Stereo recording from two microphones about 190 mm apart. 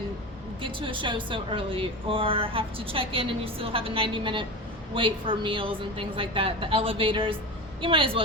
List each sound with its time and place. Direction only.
0.6 s speech: 25° right (ahead or behind)